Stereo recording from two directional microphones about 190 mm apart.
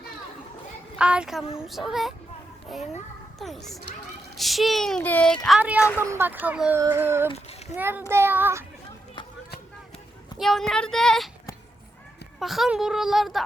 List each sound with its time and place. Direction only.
0.9 s speech: 5° right (ahead or behind)
3.3 s a child's voice: centre (ahead or behind)
7.3 s a sound: 35° left (ahead or behind)
7.8 s a child's voice: 10° right (ahead or behind)
10.3 s speech: centre (ahead or behind)
12.4 s speech: centre (ahead or behind)